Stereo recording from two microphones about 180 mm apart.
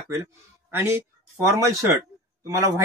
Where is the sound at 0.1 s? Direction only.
15° right (ahead or behind).